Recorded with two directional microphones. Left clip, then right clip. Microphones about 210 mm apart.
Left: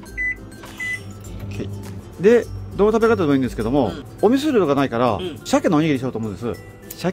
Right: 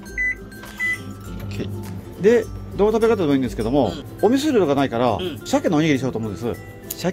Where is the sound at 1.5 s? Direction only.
5° left (ahead or behind).